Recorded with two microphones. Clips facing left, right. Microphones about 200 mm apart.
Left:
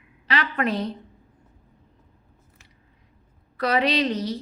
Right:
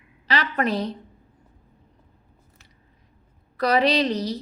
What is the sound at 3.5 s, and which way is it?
Speech, 40° right (ahead or behind).